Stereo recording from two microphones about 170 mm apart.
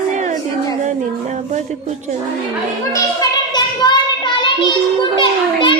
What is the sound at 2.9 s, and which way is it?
Child singing, 25° left (ahead or behind).